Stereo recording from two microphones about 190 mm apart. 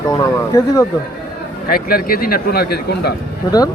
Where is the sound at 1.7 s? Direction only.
50° left (ahead or behind).